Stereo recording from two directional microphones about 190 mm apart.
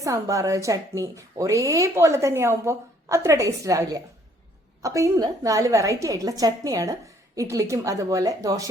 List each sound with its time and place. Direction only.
0.0 s speech: 15° right (ahead or behind)